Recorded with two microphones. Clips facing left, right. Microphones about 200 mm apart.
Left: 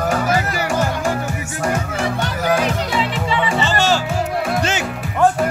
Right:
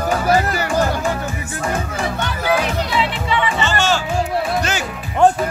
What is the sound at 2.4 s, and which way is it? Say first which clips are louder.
Music: even; 45° left (ahead or behind).